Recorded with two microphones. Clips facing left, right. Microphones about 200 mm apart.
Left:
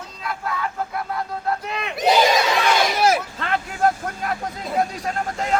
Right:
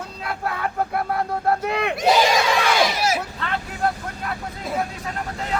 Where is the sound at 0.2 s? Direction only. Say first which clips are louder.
Even; 60° right (ahead or behind).